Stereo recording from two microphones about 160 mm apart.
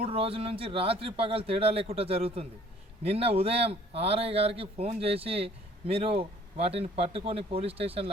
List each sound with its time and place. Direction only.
0.0 s speech: 35° right (ahead or behind)